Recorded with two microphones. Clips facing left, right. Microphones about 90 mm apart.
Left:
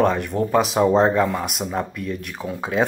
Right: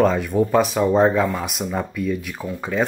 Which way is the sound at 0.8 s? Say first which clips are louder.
Left 2 dB; 25° left (ahead or behind).